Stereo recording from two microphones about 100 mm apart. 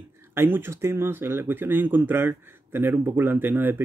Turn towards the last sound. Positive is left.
turn(degrees=-20)  # may be behind; listen again after turning